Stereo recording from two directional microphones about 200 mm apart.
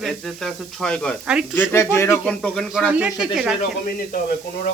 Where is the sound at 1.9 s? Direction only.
15° left (ahead or behind); by 3.5 s 5° right (ahead or behind).